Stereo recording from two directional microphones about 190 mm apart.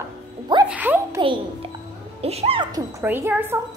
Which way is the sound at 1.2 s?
30° right (ahead or behind).